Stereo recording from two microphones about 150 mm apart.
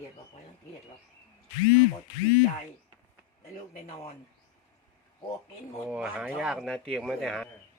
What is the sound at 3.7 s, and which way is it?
Speech, 45° left (ahead or behind).